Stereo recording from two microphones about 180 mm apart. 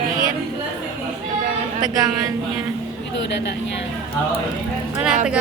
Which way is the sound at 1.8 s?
20° right (ahead or behind).